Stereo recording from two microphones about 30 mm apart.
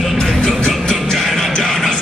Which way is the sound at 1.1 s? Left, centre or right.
Centre.